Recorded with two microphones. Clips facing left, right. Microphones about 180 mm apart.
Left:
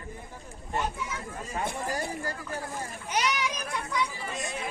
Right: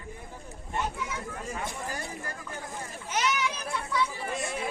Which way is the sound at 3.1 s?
15° left (ahead or behind).